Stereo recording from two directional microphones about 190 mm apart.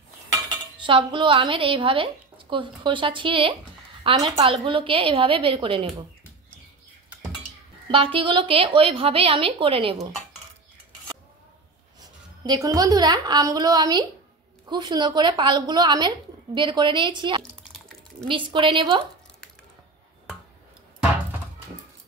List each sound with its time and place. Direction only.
0.7 s a woman's voice: 25° right (ahead or behind)
7.9 s a woman's voice: 30° right (ahead or behind)
12.4 s a woman's voice: 20° right (ahead or behind)
17.4 s drip: 5° left (ahead or behind)
18.3 s a woman's voice: 25° right (ahead or behind)